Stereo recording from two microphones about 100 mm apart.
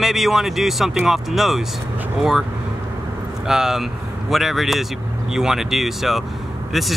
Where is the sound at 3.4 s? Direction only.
5° right (ahead or behind).